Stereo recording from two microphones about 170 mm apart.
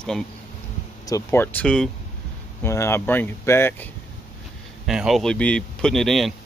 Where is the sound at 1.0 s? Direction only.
15° left (ahead or behind).